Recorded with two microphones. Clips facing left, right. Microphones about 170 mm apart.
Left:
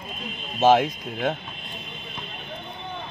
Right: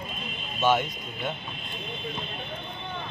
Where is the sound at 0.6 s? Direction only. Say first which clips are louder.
Left 6 dB; 90° left.